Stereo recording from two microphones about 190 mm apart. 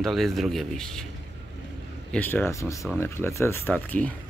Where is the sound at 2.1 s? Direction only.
10° left (ahead or behind).